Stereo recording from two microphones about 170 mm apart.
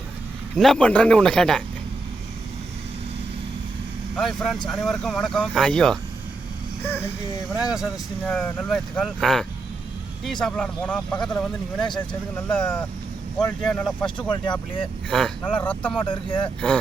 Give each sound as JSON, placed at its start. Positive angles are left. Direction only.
{"t": 0.5, "sound": "speech", "side_deg": 0}
{"t": 4.2, "sound": "speech", "side_deg": 0}
{"t": 7.5, "sound": "speech", "side_deg": -5}
{"t": 14.2, "sound": "speech", "side_deg": 30}
{"t": 15.1, "sound": "speech", "side_deg": 5}
{"t": 16.0, "sound": "speech", "side_deg": 30}